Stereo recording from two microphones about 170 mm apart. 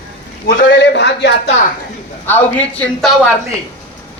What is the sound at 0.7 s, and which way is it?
Speech, 90° left.